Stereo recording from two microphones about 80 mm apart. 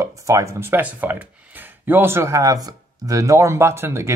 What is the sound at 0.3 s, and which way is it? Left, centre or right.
Speech, right.